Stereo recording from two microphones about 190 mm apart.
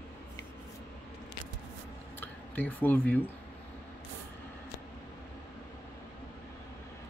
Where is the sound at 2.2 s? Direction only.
10° left (ahead or behind).